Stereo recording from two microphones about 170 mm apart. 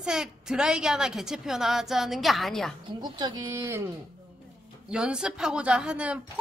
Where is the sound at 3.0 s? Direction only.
25° right (ahead or behind).